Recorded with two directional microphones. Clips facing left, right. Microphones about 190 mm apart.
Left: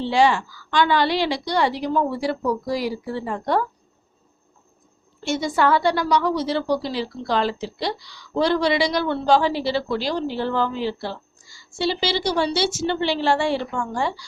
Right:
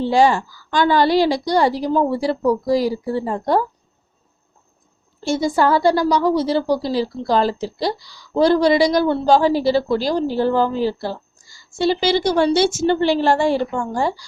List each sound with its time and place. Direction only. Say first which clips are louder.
0.0 s a woman's voice: right 3 dB; 40° right (ahead or behind)
5.2 s a woman's voice: right 3 dB; 35° right (ahead or behind)